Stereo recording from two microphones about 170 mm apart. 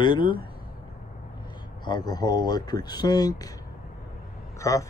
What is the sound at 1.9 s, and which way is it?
Speech, 25° left (ahead or behind).